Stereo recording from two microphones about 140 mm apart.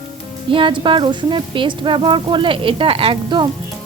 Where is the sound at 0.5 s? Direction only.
35° right (ahead or behind).